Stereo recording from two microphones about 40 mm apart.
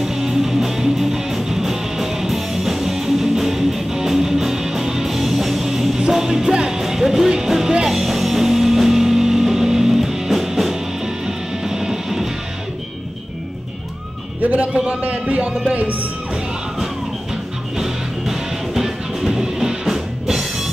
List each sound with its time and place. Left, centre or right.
0.0 s music: centre
14.4 s a sound: right
15.7 s speech: right
16.8 s music: centre